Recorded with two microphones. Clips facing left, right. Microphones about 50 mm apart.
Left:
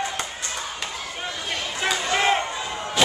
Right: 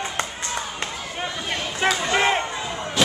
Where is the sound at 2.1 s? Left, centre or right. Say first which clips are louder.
Left 1 dB; centre.